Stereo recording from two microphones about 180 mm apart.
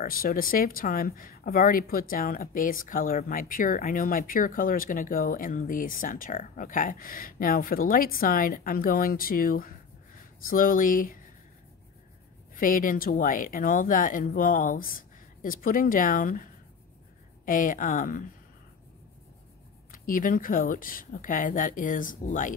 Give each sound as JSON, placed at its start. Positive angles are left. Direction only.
{"t": 0.0, "sound": "speech", "side_deg": 55}
{"t": 12.5, "sound": "speech", "side_deg": 50}
{"t": 17.5, "sound": "speech", "side_deg": 50}
{"t": 19.9, "sound": "speech", "side_deg": 50}